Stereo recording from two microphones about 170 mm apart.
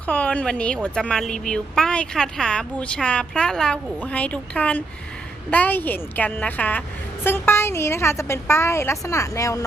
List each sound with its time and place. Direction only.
0.0 s a woman's voice: 5° left (ahead or behind)